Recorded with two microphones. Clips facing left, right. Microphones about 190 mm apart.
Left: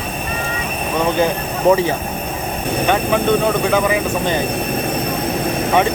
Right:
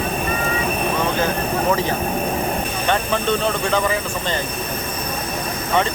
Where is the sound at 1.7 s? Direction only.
15° left (ahead or behind).